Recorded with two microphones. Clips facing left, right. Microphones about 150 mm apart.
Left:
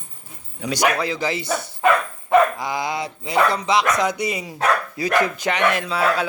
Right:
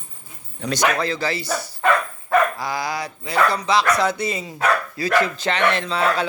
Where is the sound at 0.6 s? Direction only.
10° left (ahead or behind).